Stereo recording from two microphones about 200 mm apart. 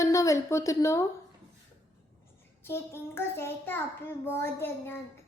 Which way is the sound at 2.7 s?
10° left (ahead or behind).